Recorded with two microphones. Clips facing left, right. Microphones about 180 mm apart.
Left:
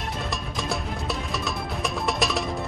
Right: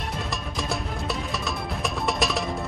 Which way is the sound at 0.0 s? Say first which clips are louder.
Even; centre (ahead or behind).